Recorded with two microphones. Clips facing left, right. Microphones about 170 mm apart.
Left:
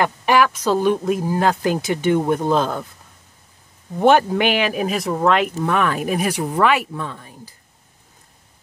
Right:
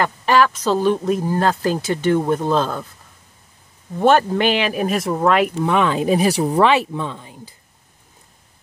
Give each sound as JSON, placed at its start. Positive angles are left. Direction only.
{"t": 0.0, "sound": "speech", "side_deg": 15}
{"t": 4.0, "sound": "speech", "side_deg": 10}
{"t": 5.7, "sound": "speech", "side_deg": -20}